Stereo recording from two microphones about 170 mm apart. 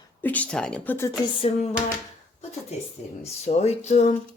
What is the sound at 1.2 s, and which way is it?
Speech, 35° left (ahead or behind).